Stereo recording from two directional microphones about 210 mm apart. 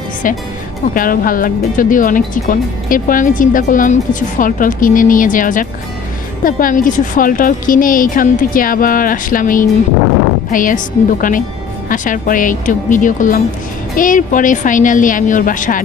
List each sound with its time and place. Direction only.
0.9 s speech: 40° left (ahead or behind)